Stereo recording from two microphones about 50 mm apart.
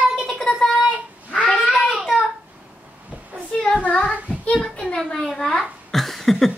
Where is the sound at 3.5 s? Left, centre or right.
Centre.